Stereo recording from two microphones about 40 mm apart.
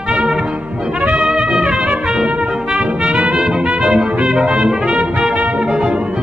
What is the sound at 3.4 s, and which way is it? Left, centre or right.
Music, right.